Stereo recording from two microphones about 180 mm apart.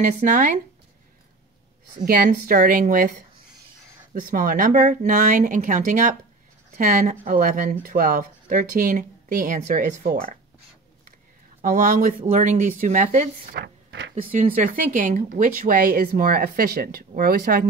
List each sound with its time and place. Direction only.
0.0 s speech: 45° right (ahead or behind)
2.0 s speech: 55° right (ahead or behind)
11.6 s speech: 50° right (ahead or behind); by 14.1 s 65° right (ahead or behind)
14.3 s speech: 45° right (ahead or behind)